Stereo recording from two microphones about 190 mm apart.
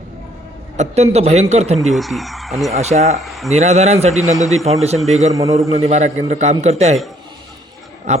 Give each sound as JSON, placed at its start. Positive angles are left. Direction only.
{"t": 0.8, "sound": "a man's voice", "side_deg": -35}
{"t": 1.8, "sound": "speech", "side_deg": 0}
{"t": 2.7, "sound": "a man's voice", "side_deg": -35}
{"t": 3.2, "sound": "speech", "side_deg": 0}
{"t": 3.5, "sound": "a man's voice", "side_deg": -35}
{"t": 4.2, "sound": "speech", "side_deg": 15}
{"t": 4.5, "sound": "a man's voice", "side_deg": -35}
{"t": 5.3, "sound": "a man's voice", "side_deg": -15}
{"t": 5.5, "sound": "a man's voice", "side_deg": -35}